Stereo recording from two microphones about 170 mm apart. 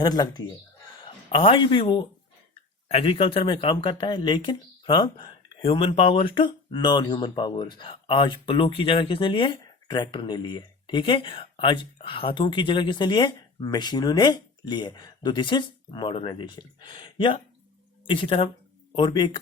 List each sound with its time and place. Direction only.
0.0 s speech: 25° left (ahead or behind)